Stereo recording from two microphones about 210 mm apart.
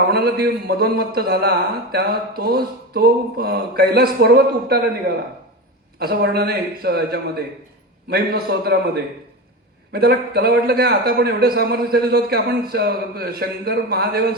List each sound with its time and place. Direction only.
0.1 s a man's voice: 50° right (ahead or behind)
9.9 s a man's voice: 50° right (ahead or behind)